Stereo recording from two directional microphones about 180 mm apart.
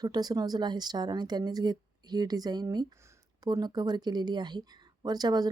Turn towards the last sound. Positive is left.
turn(degrees=-20)  # may be behind; listen again after turning